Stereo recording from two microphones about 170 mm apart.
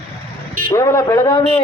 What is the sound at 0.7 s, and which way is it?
Speech, 15° left (ahead or behind).